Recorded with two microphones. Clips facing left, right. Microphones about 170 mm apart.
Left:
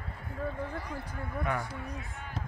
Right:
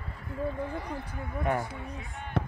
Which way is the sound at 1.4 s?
25° right (ahead or behind).